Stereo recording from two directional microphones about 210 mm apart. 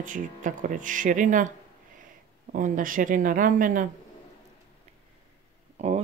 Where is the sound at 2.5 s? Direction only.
40° right (ahead or behind).